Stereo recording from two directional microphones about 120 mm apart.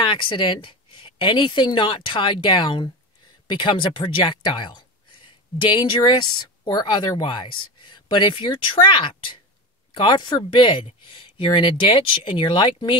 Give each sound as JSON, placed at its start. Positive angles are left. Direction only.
{"t": 0.0, "sound": "speech", "side_deg": 45}